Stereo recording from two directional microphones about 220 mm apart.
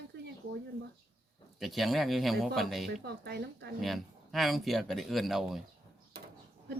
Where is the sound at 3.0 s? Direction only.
50° right (ahead or behind).